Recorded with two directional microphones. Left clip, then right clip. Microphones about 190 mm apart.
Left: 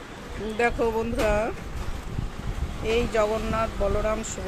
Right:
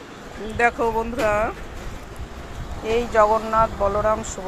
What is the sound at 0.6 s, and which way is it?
Speech, 10° left (ahead or behind).